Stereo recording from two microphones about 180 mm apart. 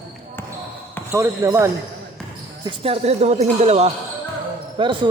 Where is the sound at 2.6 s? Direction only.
30° right (ahead or behind).